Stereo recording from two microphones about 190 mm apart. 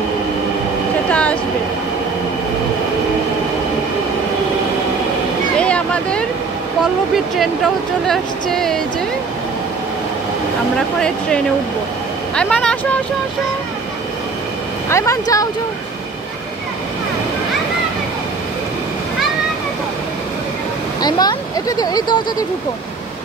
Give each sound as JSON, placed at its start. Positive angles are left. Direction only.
{"t": 1.1, "sound": "vehicle", "side_deg": 5}
{"t": 5.6, "sound": "a sound", "side_deg": 5}
{"t": 7.3, "sound": "speech", "side_deg": 0}
{"t": 11.0, "sound": "speech", "side_deg": 5}
{"t": 14.9, "sound": "speech", "side_deg": 15}
{"t": 21.0, "sound": "speech", "side_deg": 20}